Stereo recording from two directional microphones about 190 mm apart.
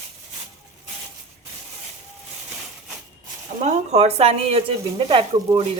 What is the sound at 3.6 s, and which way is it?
Speech, 35° right (ahead or behind).